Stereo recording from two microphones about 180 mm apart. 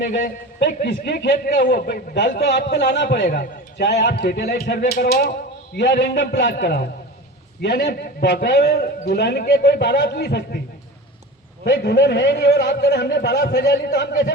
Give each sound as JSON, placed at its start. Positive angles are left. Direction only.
{"t": 0.6, "sound": "a man's voice", "side_deg": 65}
{"t": 11.6, "sound": "a man's voice", "side_deg": 70}